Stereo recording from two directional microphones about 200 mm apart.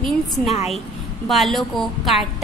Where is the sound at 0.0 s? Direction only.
Centre (ahead or behind).